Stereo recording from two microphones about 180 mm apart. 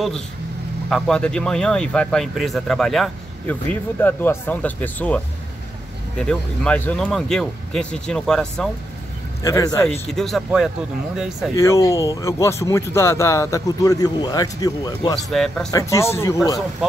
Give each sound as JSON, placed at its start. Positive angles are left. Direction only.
{"t": 0.8, "sound": "speech", "side_deg": 5}
{"t": 9.4, "sound": "speech", "side_deg": 15}
{"t": 9.8, "sound": "speech", "side_deg": 0}
{"t": 11.5, "sound": "speech", "side_deg": 15}
{"t": 15.1, "sound": "speech", "side_deg": 0}
{"t": 15.7, "sound": "speech", "side_deg": 15}